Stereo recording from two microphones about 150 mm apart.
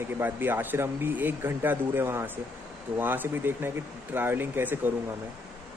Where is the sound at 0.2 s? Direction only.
15° right (ahead or behind).